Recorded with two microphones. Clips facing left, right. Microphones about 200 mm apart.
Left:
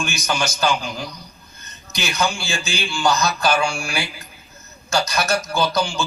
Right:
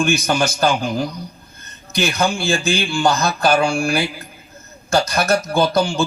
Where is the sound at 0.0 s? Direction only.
55° right (ahead or behind).